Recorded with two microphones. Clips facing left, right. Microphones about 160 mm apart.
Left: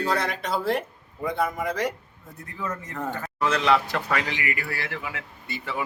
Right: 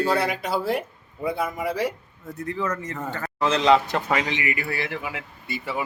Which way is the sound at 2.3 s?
80° right.